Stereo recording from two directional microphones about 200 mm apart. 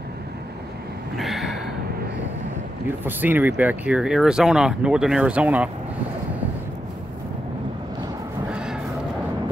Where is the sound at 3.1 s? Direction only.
10° right (ahead or behind).